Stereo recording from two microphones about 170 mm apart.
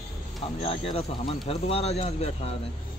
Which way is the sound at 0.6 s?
35° left (ahead or behind).